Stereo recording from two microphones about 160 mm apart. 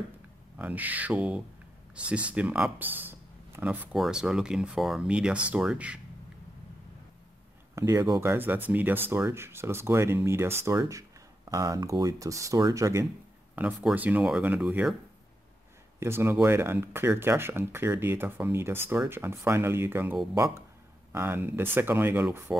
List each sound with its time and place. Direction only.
0.6 s speech: 10° right (ahead or behind)
7.7 s speech: 20° right (ahead or behind)
16.0 s speech: 15° right (ahead or behind)